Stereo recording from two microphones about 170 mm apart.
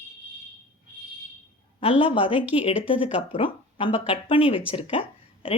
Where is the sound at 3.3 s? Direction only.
30° left (ahead or behind).